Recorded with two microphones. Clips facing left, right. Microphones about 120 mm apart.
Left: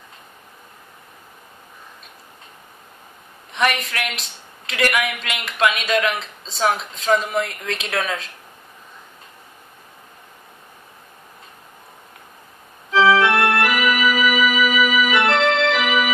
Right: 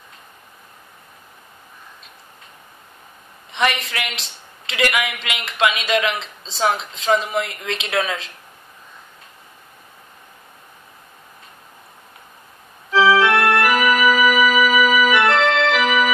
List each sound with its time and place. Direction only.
3.5 s a man's voice: centre (ahead or behind)
13.2 s organ: 30° left (ahead or behind)
13.7 s keyboard: 50° right (ahead or behind)
15.1 s organ: 35° left (ahead or behind)
15.7 s keyboard: 45° right (ahead or behind)